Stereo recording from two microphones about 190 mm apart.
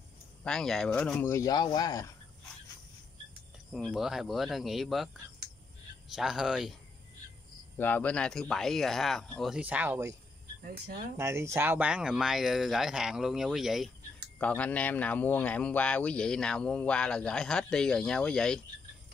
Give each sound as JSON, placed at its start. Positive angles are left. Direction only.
{"t": 0.4, "sound": "speech", "side_deg": 5}
{"t": 1.3, "sound": "speech", "side_deg": 20}
{"t": 3.7, "sound": "speech", "side_deg": 0}
{"t": 6.1, "sound": "speech", "side_deg": 0}
{"t": 7.7, "sound": "speech", "side_deg": 10}
{"t": 10.6, "sound": "speech", "side_deg": -55}
{"t": 11.1, "sound": "speech", "side_deg": -15}